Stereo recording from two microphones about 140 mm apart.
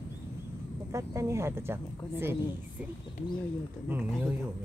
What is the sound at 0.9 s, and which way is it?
Speech, 20° right (ahead or behind).